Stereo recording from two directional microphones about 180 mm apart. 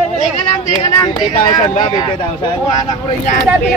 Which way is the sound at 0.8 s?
25° left (ahead or behind).